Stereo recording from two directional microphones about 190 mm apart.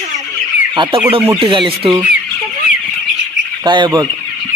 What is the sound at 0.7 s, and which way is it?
Speech, 25° right (ahead or behind).